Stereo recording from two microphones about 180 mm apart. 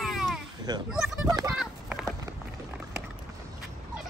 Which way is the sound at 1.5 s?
5° right (ahead or behind).